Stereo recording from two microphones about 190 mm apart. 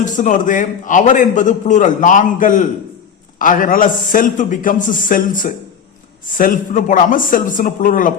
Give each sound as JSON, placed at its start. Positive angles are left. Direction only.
{"t": 0.0, "sound": "a man's voice", "side_deg": 40}